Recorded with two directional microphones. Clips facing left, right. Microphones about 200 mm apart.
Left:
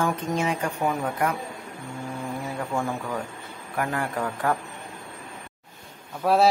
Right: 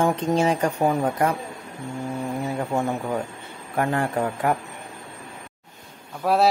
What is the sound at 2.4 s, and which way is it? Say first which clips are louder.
A man's voice: right 3 dB; 25° right (ahead or behind).